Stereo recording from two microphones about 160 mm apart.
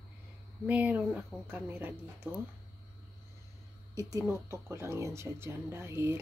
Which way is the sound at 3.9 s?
20° right (ahead or behind).